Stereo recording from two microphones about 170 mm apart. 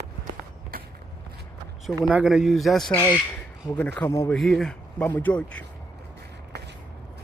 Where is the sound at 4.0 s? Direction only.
15° left (ahead or behind).